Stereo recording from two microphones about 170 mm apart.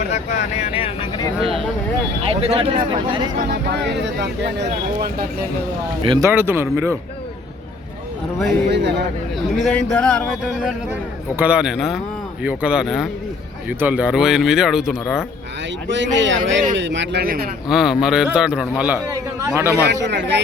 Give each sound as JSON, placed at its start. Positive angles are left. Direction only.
{"t": 0.1, "sound": "speech", "side_deg": 45}
{"t": 2.2, "sound": "speech", "side_deg": -35}
{"t": 3.5, "sound": "speech", "side_deg": -80}
{"t": 6.0, "sound": "speech", "side_deg": -30}
{"t": 6.2, "sound": "speech", "side_deg": -15}
{"t": 8.7, "sound": "a man's voice", "side_deg": -90}
{"t": 9.6, "sound": "speech", "side_deg": 5}
{"t": 15.9, "sound": "a man's voice", "side_deg": -90}
{"t": 17.7, "sound": "speech", "side_deg": 0}
{"t": 19.9, "sound": "a man's voice", "side_deg": -90}